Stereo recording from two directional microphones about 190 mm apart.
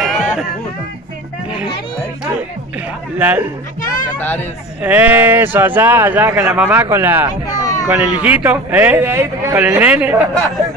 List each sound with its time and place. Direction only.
0.0 s a sound: centre (ahead or behind)
3.2 s speech: 10° right (ahead or behind)
4.2 s speech: 10° left (ahead or behind)
4.8 s speech: 10° right (ahead or behind)
7.5 s a sound: 20° left (ahead or behind)
7.9 s speech: 5° right (ahead or behind)